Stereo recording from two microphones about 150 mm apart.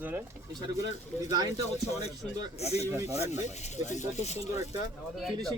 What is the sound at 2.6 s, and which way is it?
Speech, 45° left (ahead or behind).